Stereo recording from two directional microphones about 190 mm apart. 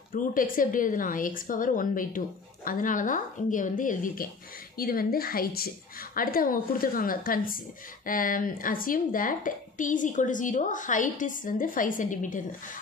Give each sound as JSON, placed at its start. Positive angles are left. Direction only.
{"t": 0.1, "sound": "a woman's voice", "side_deg": 45}